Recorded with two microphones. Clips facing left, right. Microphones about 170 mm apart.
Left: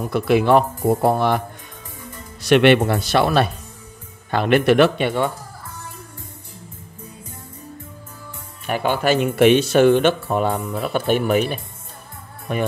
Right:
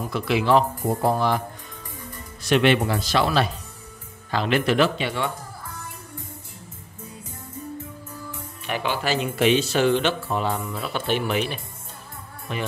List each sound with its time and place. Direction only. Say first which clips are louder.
0.3 s speech: left 4 dB; 55° left (ahead or behind)
2.4 s speech: left 6 dB; 65° left (ahead or behind)
8.6 s speech: left 6 dB; 45° left (ahead or behind)